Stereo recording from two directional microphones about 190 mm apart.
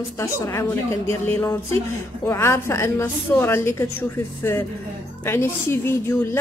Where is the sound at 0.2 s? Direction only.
15° left (ahead or behind).